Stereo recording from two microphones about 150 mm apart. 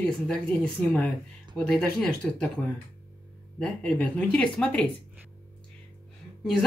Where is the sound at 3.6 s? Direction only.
10° left (ahead or behind).